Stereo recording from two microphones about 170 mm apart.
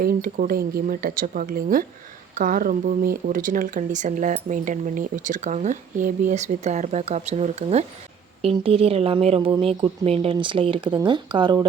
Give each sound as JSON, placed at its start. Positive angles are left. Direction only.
{"t": 0.0, "sound": "speech", "side_deg": -55}